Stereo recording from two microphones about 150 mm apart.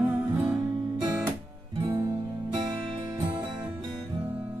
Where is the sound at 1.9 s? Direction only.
20° right (ahead or behind).